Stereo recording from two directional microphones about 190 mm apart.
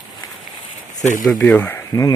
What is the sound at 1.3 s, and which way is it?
Speech, 10° left (ahead or behind).